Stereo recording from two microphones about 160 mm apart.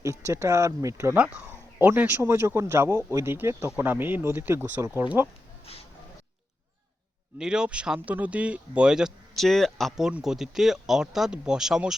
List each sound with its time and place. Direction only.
0.0 s speech: 20° right (ahead or behind)
7.3 s speech: 5° right (ahead or behind)